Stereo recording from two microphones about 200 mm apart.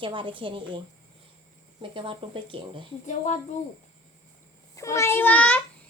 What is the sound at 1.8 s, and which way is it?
Speech, 25° right (ahead or behind).